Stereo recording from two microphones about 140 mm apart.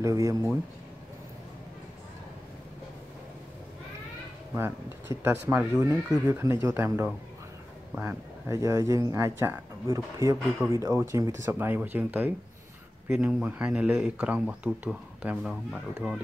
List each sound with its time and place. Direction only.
0.0 s speech: 25° right (ahead or behind)
5.2 s speech: 15° right (ahead or behind)
8.5 s speech: 25° right (ahead or behind); by 16.2 s 5° right (ahead or behind)